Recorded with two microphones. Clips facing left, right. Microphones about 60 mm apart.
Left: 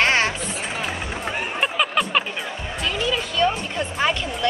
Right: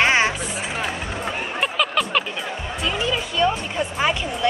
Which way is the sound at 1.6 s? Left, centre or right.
Centre.